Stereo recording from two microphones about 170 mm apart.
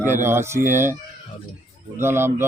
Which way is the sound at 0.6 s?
45° right (ahead or behind).